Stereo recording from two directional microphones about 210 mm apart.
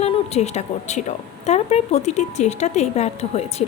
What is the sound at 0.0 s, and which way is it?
Speech, 30° left (ahead or behind).